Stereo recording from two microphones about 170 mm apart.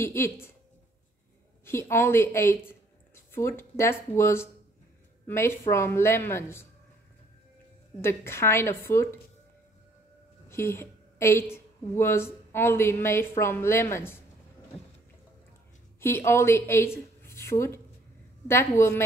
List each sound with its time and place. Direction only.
0.0 s a woman's voice: 15° left (ahead or behind)
1.6 s a woman's voice: 15° left (ahead or behind)
8.0 s a woman's voice: 15° left (ahead or behind)
10.5 s a woman's voice: 15° left (ahead or behind)
16.0 s a woman's voice: 15° left (ahead or behind)